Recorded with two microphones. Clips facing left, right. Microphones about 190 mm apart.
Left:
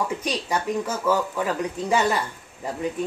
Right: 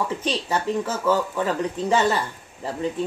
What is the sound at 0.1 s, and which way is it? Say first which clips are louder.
Speech: right 1 dB; 10° left (ahead or behind).